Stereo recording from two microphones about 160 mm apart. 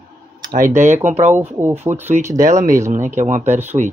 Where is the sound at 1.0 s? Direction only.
45° right (ahead or behind).